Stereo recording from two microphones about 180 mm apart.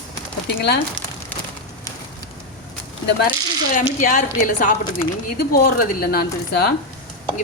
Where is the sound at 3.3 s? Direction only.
50° left (ahead or behind).